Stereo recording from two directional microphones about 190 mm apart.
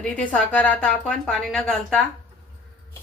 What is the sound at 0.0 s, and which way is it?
A woman's voice, 5° left (ahead or behind).